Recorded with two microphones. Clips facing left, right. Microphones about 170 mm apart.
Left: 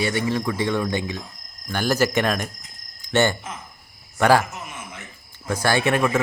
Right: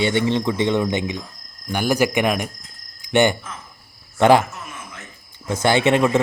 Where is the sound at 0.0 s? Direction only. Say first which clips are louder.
Right 4 dB; 25° right (ahead or behind).